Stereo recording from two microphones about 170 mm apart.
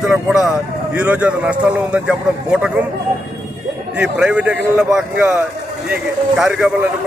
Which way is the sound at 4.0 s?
5° right (ahead or behind).